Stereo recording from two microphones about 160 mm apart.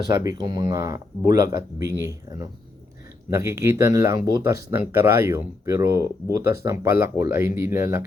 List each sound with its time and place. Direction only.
0.2 s speech: 25° right (ahead or behind)